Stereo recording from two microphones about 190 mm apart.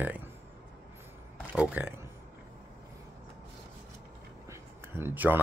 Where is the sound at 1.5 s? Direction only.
10° right (ahead or behind).